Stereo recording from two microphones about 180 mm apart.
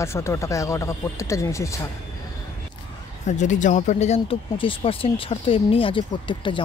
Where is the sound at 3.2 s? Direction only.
40° left (ahead or behind).